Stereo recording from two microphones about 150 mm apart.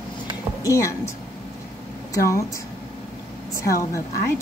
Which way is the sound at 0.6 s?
20° left (ahead or behind).